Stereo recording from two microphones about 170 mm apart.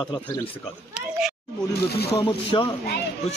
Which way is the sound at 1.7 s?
70° left (ahead or behind).